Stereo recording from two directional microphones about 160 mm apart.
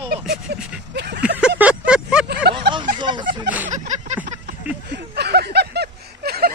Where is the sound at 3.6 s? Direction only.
50° right (ahead or behind).